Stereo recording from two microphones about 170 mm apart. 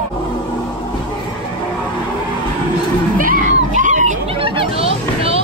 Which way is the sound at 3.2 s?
50° right (ahead or behind).